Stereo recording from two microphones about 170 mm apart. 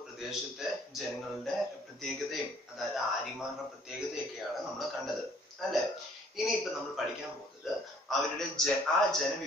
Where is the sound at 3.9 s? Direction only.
Centre (ahead or behind).